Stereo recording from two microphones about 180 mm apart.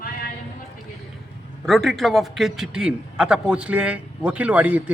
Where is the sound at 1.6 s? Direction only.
Centre (ahead or behind).